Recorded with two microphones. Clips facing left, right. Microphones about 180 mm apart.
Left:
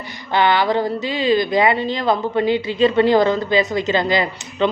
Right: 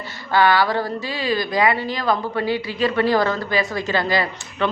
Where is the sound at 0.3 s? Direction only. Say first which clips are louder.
Even; 20° left (ahead or behind).